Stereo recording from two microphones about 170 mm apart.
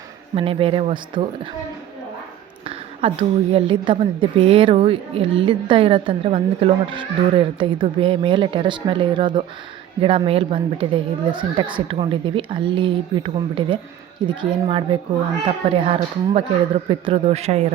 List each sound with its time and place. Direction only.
0.3 s a woman's voice: 35° right (ahead or behind)
2.6 s a woman's voice: 35° right (ahead or behind)